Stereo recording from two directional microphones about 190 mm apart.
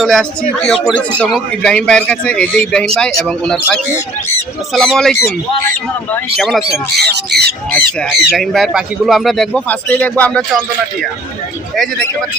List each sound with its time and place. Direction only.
0.0 s speech: centre (ahead or behind)
7.0 s speech: 60° right (ahead or behind)
7.7 s speech: 5° left (ahead or behind)